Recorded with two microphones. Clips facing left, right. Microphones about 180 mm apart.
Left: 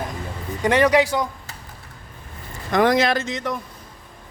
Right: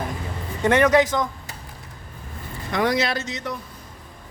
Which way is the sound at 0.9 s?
10° left (ahead or behind).